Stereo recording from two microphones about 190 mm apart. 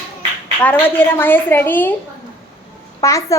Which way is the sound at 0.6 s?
10° left (ahead or behind).